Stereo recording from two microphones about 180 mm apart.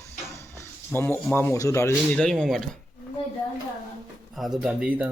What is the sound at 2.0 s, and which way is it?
Speech, 5° left (ahead or behind).